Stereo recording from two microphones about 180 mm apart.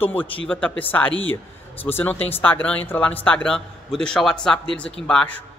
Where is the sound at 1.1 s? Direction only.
90° left.